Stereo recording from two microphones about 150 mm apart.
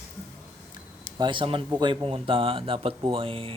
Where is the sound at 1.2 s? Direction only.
35° right (ahead or behind).